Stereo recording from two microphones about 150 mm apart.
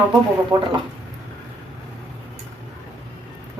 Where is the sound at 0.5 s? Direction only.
20° right (ahead or behind).